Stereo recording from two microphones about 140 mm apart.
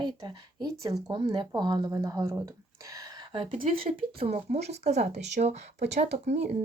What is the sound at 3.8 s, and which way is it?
Speech, 45° right (ahead or behind).